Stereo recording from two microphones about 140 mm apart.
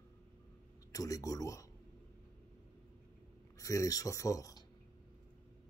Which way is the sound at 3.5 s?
25° left (ahead or behind).